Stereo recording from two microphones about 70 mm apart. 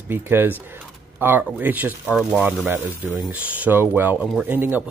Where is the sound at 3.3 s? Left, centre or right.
Right.